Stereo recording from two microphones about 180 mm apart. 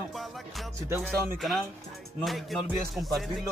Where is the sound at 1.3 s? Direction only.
Centre (ahead or behind).